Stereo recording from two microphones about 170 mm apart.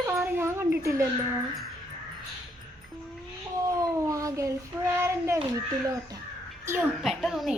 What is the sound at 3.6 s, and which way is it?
A child's voice, 20° right (ahead or behind).